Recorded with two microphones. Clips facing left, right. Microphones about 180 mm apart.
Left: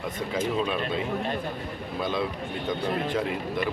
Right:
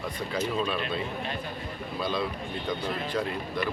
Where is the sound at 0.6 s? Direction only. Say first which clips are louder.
Left 2 dB; 15° left (ahead or behind).